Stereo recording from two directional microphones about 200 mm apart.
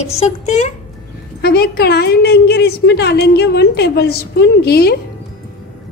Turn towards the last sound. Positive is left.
turn(degrees=55)  # may be behind; listen again after turning